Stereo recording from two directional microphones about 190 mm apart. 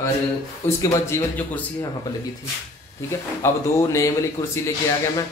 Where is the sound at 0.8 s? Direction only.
15° left (ahead or behind).